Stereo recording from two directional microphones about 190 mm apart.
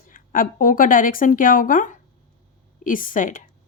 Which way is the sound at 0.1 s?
45° left (ahead or behind).